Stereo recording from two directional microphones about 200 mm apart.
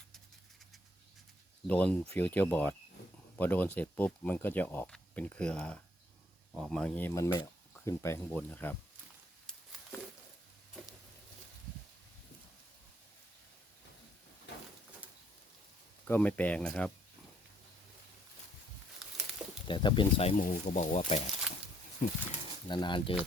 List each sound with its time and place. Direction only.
1.6 s speech: 5° left (ahead or behind)
9.5 s a sound: 5° left (ahead or behind)
16.0 s speech: 10° left (ahead or behind)
18.9 s a sound: centre (ahead or behind)
19.6 s speech: 25° left (ahead or behind)
20.4 s speech: 40° left (ahead or behind)
22.7 s speech: 25° left (ahead or behind)